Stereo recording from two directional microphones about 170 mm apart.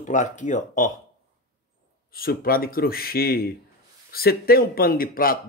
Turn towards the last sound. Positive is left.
turn(degrees=55)  # may be behind; listen again after turning